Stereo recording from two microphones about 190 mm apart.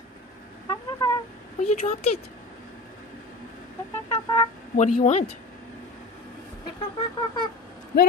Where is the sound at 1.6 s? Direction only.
35° left (ahead or behind).